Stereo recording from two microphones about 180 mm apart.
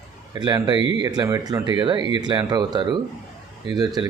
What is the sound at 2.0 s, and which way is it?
Speech, 30° left (ahead or behind).